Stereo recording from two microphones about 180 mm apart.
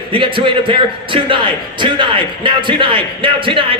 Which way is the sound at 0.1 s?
30° right (ahead or behind).